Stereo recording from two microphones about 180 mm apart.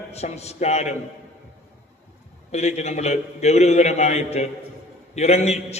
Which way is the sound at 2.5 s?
40° left (ahead or behind).